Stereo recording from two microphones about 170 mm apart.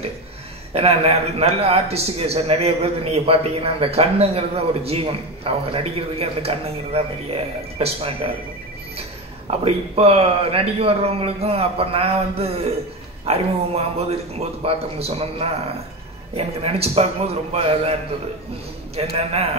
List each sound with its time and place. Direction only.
0.7 s a man's voice: 35° right (ahead or behind)
9.5 s a man's voice: 35° right (ahead or behind)
19.1 s a man's voice: 35° right (ahead or behind)